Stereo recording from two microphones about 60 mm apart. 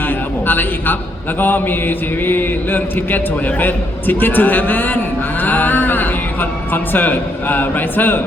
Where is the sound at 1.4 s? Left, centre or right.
Left.